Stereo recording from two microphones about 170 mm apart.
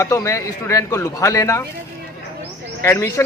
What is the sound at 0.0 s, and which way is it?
A man's voice, 15° left (ahead or behind).